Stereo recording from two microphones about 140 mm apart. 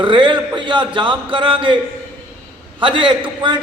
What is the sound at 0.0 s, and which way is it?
A man's voice, 35° right (ahead or behind).